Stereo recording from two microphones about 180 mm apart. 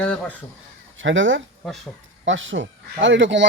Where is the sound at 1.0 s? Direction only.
90° right.